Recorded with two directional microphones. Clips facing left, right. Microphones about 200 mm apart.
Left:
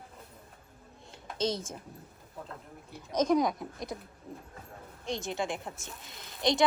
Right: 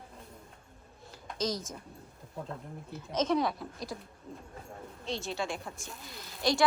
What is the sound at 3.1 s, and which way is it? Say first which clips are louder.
Speech: left 3 dB; 10° left (ahead or behind).